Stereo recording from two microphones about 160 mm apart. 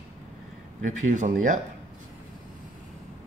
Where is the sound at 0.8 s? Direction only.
50° right (ahead or behind).